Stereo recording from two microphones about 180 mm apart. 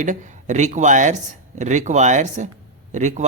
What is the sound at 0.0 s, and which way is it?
Speech, 45° right (ahead or behind).